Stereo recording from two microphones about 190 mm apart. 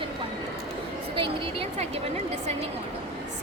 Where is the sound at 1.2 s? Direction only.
30° right (ahead or behind).